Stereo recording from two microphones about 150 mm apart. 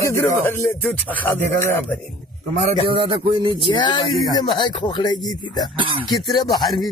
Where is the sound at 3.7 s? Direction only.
30° left (ahead or behind).